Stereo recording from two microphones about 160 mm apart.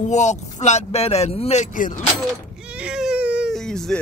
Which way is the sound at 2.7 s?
5° right (ahead or behind).